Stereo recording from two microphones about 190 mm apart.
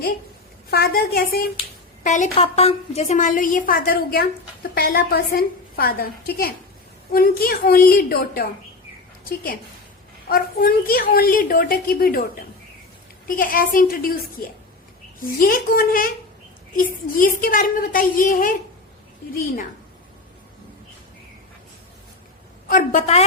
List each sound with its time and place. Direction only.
0.7 s a woman's voice: 55° left (ahead or behind)
2.0 s a woman's voice: 40° left (ahead or behind)
10.2 s a woman's voice: 50° left (ahead or behind)
22.7 s a woman's voice: 40° left (ahead or behind)